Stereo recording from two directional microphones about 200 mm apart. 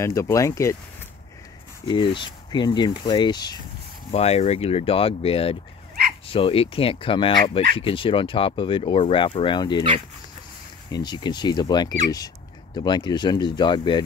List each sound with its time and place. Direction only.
0.0 s speech: 15° left (ahead or behind)
1.9 s speech: 25° left (ahead or behind)
4.1 s speech: 30° left (ahead or behind)
10.9 s speech: 20° left (ahead or behind)